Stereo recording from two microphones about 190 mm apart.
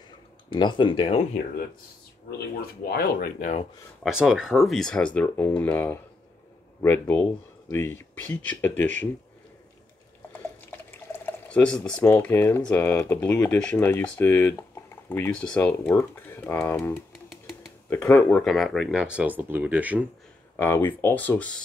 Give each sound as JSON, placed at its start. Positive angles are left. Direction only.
{"t": 0.5, "sound": "speech", "side_deg": 25}
{"t": 2.6, "sound": "speech", "side_deg": 55}
{"t": 4.0, "sound": "speech", "side_deg": -5}
{"t": 10.3, "sound": "speech", "side_deg": 10}
{"t": 17.3, "sound": "a sound", "side_deg": 0}
{"t": 17.8, "sound": "speech", "side_deg": 10}
{"t": 20.5, "sound": "speech", "side_deg": 10}